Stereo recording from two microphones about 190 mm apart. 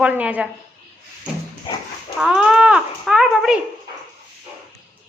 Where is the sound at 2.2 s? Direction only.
Centre (ahead or behind).